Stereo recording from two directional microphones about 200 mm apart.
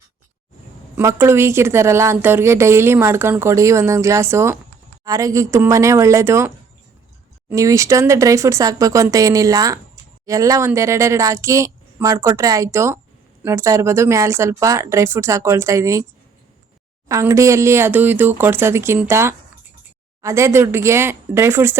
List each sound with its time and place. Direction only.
0.9 s a woman's voice: 10° right (ahead or behind)
7.5 s a woman's voice: 15° right (ahead or behind)
17.1 s a woman's voice: 15° right (ahead or behind)